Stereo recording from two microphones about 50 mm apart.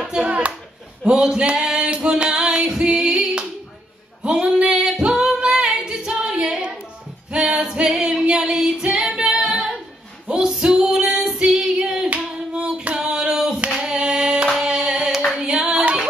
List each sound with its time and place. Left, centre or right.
0.0 s clapping: centre
1.0 s female singing: centre
4.2 s singing: right
7.2 s female singing: centre
10.2 s music: right
10.5 s female singing: centre
13.7 s singing: centre